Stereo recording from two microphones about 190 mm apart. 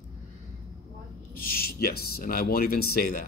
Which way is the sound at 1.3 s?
50° left (ahead or behind).